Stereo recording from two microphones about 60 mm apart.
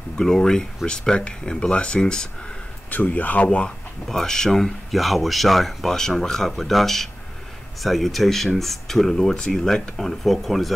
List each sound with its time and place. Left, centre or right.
0.2 s speech: centre
2.9 s speech: left
3.4 s speech: centre